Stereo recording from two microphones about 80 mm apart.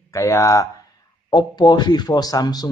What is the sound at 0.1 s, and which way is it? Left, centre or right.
Speech, left.